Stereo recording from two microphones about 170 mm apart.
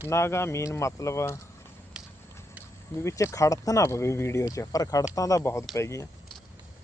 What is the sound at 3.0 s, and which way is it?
Speech, 20° left (ahead or behind).